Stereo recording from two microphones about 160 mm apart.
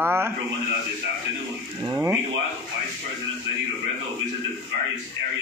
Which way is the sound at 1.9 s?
15° right (ahead or behind).